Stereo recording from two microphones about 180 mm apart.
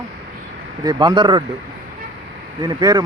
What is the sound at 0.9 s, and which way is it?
Speech, 25° right (ahead or behind).